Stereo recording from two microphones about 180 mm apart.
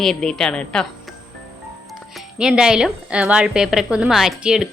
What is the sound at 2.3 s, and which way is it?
A woman's voice, 5° right (ahead or behind).